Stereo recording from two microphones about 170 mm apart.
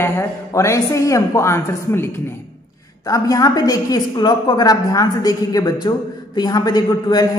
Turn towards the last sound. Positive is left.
turn(degrees=25)  # may be behind; listen again after turning